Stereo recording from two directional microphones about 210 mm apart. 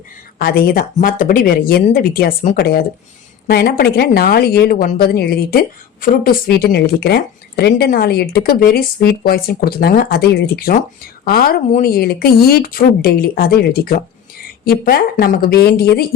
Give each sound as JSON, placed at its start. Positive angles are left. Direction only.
{"t": 0.3, "sound": "speech", "side_deg": 45}